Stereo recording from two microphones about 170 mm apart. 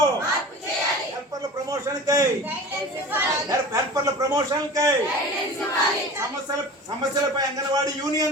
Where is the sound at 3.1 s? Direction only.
20° right (ahead or behind).